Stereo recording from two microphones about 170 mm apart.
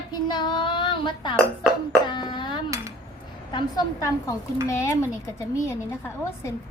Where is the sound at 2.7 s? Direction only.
15° right (ahead or behind).